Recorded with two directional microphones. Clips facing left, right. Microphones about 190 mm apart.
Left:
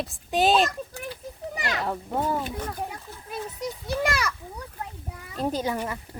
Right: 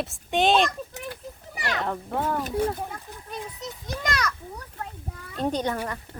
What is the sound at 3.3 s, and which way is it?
Children playing, 10° left (ahead or behind).